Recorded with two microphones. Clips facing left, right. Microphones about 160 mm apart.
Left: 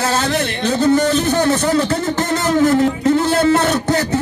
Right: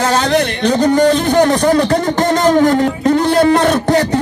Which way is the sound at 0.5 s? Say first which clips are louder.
Right 4 dB; 15° right (ahead or behind).